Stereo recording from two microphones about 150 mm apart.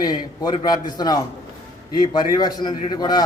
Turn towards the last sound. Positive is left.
turn(degrees=25)  # may be behind; listen again after turning